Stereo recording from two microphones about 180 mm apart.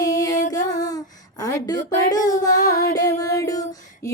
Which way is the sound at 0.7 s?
20° left (ahead or behind).